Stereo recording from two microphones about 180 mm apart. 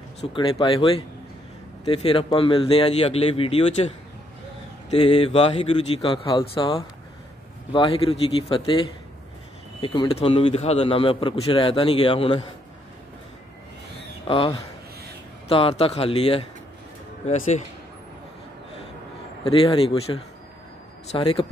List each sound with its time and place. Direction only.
0.2 s speech: 30° left (ahead or behind)
4.9 s speech: 35° left (ahead or behind)
14.2 s speech: 30° left (ahead or behind)
19.4 s speech: 30° left (ahead or behind)